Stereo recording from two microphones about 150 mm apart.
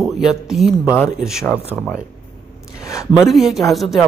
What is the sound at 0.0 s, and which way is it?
Speech, centre (ahead or behind).